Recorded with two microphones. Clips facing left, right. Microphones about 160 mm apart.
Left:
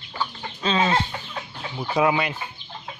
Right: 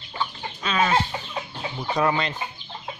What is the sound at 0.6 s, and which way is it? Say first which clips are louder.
Chicken: left 1 dB; 25° left (ahead or behind).